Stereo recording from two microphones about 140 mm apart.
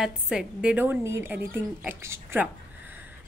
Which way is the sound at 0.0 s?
5° right (ahead or behind).